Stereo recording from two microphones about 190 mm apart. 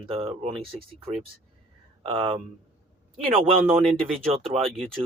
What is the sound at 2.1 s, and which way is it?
Speech, 30° right (ahead or behind).